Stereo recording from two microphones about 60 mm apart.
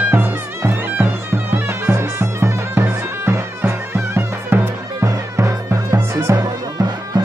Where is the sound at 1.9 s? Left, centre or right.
Right.